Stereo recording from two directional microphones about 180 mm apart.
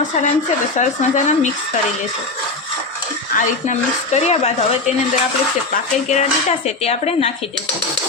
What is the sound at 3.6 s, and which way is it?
Speech, 40° left (ahead or behind).